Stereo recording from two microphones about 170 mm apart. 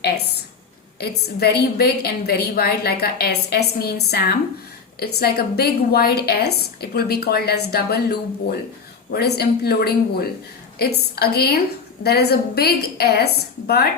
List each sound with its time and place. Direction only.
0.9 s a woman's voice: 70° left (ahead or behind)